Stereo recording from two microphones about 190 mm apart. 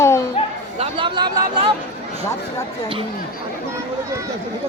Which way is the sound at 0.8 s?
25° right (ahead or behind).